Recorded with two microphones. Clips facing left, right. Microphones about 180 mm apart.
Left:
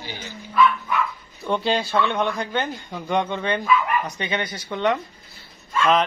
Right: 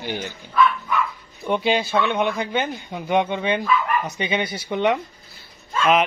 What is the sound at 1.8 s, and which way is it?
A man's voice, 5° right (ahead or behind).